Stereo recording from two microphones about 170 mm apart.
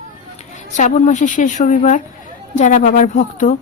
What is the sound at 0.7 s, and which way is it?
Speech, 45° left (ahead or behind).